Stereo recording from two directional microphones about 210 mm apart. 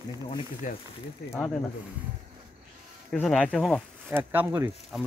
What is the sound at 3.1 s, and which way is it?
Speech, 5° left (ahead or behind).